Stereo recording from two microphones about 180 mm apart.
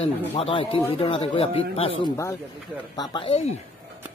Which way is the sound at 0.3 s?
30° left (ahead or behind).